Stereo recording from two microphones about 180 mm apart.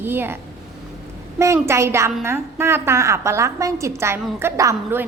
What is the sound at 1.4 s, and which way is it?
A woman's voice, 15° right (ahead or behind).